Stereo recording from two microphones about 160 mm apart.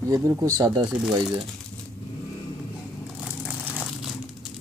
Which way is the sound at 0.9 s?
5° right (ahead or behind).